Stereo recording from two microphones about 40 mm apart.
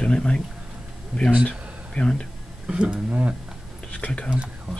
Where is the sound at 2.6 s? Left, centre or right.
Right.